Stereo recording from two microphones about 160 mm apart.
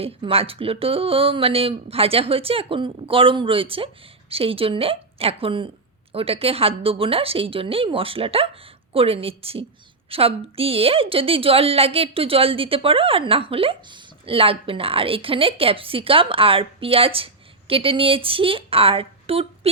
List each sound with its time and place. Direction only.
0.0 s a woman's voice: 35° right (ahead or behind)